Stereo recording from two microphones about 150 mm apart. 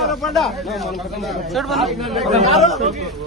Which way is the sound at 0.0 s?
Centre (ahead or behind).